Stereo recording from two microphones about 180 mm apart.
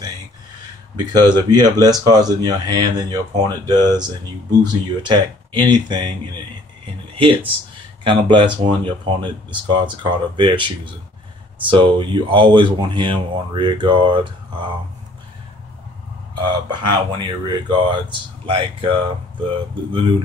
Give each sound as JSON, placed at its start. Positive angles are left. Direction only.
{"t": 0.9, "sound": "speech", "side_deg": -25}
{"t": 7.2, "sound": "speech", "side_deg": -30}
{"t": 16.3, "sound": "speech", "side_deg": -25}